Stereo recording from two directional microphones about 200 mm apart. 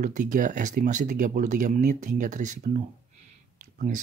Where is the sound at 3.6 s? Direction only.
40° right (ahead or behind).